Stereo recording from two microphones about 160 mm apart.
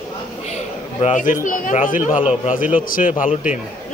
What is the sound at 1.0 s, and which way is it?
Speech, 50° left (ahead or behind).